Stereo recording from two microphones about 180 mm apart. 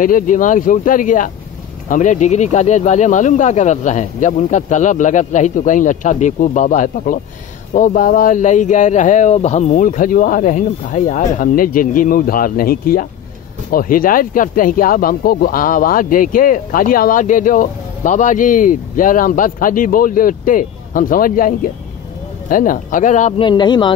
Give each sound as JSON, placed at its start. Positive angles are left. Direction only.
{"t": 0.0, "sound": "speech", "side_deg": 50}
{"t": 23.4, "sound": "speech", "side_deg": 25}